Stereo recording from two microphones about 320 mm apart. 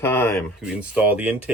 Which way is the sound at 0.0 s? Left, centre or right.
Centre.